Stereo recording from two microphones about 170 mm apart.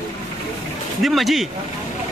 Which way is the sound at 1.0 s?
Centre (ahead or behind).